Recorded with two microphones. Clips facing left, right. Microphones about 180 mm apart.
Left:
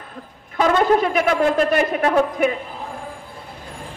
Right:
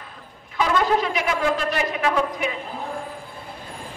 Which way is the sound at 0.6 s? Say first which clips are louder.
Left 4 dB; 50° left (ahead or behind).